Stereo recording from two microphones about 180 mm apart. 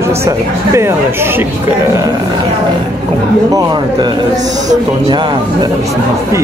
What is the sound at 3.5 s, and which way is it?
Speech, 20° right (ahead or behind).